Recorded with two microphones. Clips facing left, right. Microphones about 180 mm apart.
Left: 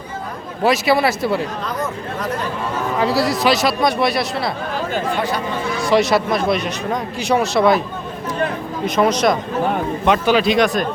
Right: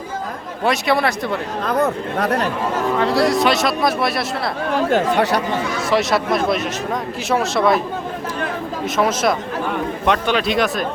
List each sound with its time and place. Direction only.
0.6 s speech: centre (ahead or behind)
1.6 s speech: 60° right (ahead or behind)
3.0 s speech: 5° left (ahead or behind)
4.7 s speech: 75° right (ahead or behind)
5.9 s speech: centre (ahead or behind)
9.0 s speech: 5° right (ahead or behind)